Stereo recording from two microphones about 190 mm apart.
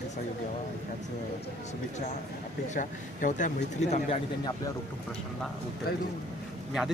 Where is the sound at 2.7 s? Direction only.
40° left (ahead or behind).